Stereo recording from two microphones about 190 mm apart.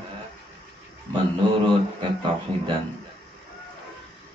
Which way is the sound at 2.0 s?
25° right (ahead or behind).